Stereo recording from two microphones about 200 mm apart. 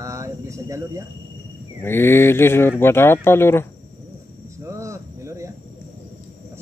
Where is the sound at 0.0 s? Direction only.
15° right (ahead or behind).